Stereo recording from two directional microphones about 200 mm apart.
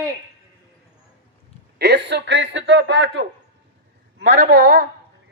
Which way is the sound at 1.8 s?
60° right (ahead or behind).